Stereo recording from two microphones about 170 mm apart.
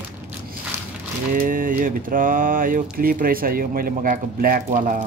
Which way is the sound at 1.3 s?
55° right (ahead or behind).